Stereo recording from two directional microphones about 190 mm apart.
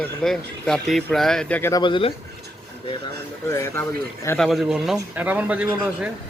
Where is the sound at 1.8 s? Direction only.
25° left (ahead or behind).